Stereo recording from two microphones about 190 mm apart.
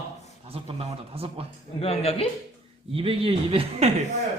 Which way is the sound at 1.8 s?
30° left (ahead or behind).